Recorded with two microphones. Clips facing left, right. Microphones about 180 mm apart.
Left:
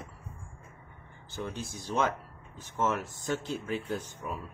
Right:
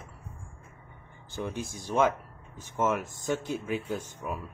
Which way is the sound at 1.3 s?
15° right (ahead or behind).